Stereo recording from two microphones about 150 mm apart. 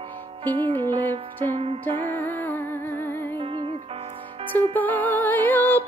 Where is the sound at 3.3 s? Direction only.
35° right (ahead or behind).